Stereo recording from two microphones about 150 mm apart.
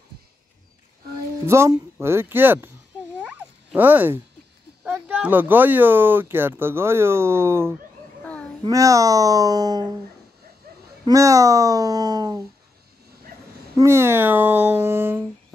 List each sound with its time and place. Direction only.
1.4 s speech: 20° right (ahead or behind)
3.2 s a sound: 10° right (ahead or behind)
4.8 s speech: 10° right (ahead or behind)
8.2 s babbling: 10° left (ahead or behind)
8.6 s a child's voice: 20° right (ahead or behind)
11.1 s a child's voice: 20° right (ahead or behind)
13.3 s dog: 75° right (ahead or behind)
13.7 s speech: 20° right (ahead or behind)